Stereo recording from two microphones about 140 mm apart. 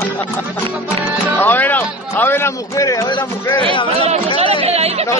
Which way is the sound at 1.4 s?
15° left (ahead or behind).